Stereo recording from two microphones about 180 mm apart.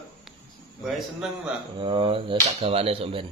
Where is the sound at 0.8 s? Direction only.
Centre (ahead or behind).